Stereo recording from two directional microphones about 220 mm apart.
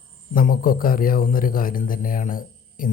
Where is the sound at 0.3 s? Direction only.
40° left (ahead or behind).